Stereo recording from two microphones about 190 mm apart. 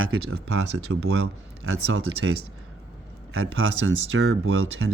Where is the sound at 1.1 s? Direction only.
75° right (ahead or behind).